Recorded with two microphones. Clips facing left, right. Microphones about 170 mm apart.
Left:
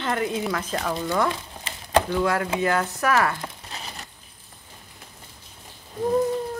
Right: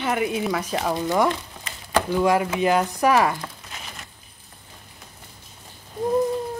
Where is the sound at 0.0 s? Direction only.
15° right (ahead or behind).